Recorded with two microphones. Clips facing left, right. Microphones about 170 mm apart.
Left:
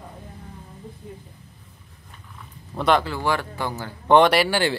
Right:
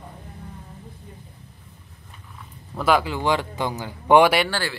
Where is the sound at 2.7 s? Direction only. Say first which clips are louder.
Even; 5° right (ahead or behind).